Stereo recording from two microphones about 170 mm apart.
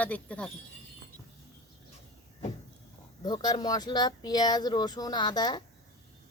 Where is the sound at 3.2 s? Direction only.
25° left (ahead or behind).